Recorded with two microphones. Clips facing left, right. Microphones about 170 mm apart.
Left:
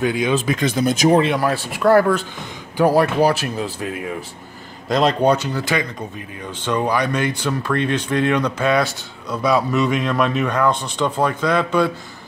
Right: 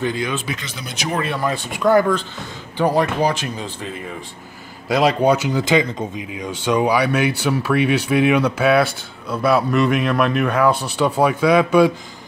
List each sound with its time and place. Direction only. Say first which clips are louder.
0.0 s speech: left 3 dB; 15° left (ahead or behind)
0.5 s speech: left 11 dB; 50° left (ahead or behind)
1.3 s speech: left 2 dB; 5° left (ahead or behind)
4.8 s speech: even; 5° right (ahead or behind)